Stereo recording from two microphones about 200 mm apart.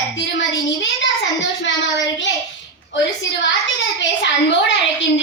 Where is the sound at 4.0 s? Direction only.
65° left (ahead or behind).